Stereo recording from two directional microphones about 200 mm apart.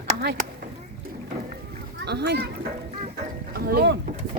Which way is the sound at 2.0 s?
55° right (ahead or behind).